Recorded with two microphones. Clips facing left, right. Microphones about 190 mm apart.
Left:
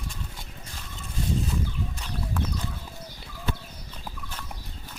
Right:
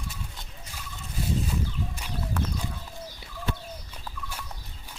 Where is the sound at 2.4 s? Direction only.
Centre (ahead or behind).